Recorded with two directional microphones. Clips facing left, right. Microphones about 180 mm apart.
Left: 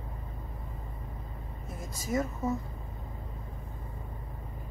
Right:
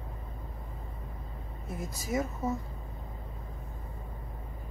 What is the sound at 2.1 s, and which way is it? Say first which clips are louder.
Speech: left 1 dB; 10° right (ahead or behind).